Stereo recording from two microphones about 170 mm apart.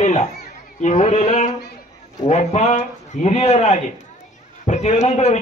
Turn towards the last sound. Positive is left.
turn(degrees=40)  # may be behind; listen again after turning